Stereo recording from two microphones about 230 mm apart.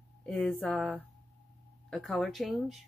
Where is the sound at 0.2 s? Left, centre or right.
Centre.